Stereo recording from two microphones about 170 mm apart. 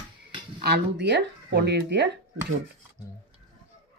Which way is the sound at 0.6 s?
80° right.